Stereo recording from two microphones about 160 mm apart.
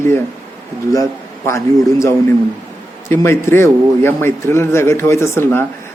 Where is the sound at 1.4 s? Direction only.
20° left (ahead or behind).